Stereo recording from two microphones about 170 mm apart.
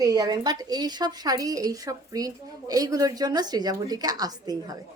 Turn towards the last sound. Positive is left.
turn(degrees=-20)  # may be behind; listen again after turning